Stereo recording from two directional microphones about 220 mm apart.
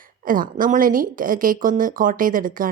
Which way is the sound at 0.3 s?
40° right (ahead or behind).